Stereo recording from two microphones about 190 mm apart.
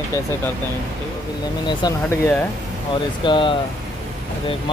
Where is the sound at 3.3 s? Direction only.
25° left (ahead or behind).